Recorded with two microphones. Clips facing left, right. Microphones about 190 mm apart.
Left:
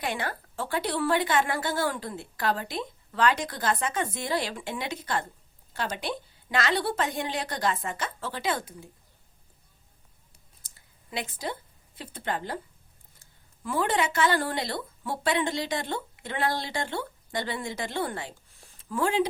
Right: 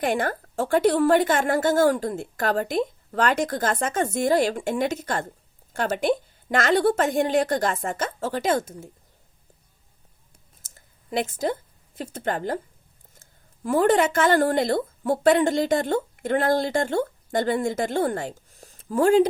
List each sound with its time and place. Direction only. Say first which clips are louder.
0.0 s a woman's voice: right 8 dB; 45° right (ahead or behind)
10.6 s a sound: right 4 dB; 45° right (ahead or behind)
11.9 s a woman's voice: right 5 dB; 45° right (ahead or behind)